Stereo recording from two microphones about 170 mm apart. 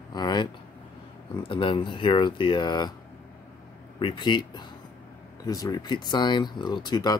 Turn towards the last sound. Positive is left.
turn(degrees=25)  # may be behind; listen again after turning